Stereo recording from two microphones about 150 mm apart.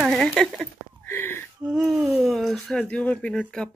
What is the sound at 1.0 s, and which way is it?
Speech, 15° left (ahead or behind).